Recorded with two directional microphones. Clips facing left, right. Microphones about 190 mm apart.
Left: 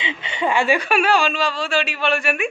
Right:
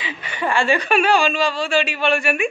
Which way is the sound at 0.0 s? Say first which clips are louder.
Left 2 dB; 20° left (ahead or behind).